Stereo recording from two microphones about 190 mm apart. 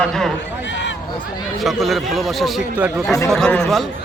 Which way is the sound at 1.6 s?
Centre (ahead or behind).